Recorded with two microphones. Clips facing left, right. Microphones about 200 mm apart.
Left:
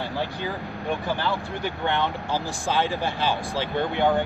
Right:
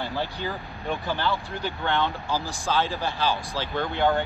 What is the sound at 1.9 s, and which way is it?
Speech, 15° left (ahead or behind).